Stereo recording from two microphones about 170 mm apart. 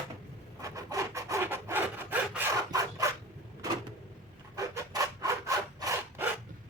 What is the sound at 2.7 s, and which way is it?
Rub, 20° right (ahead or behind).